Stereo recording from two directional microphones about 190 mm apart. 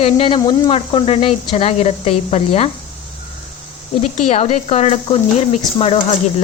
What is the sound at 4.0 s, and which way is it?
Speech, 40° left (ahead or behind).